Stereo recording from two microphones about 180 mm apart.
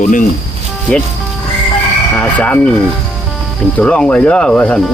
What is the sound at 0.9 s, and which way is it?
Speech, 10° left (ahead or behind).